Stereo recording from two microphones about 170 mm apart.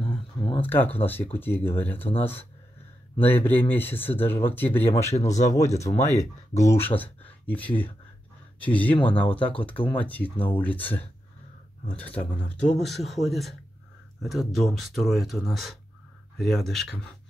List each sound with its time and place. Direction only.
0.0 s a sound: 30° left (ahead or behind)
0.6 s speech: 10° left (ahead or behind)
3.4 s speech: 10° left (ahead or behind)
5.1 s speech: 45° left (ahead or behind)
6.6 s speech: 15° left (ahead or behind)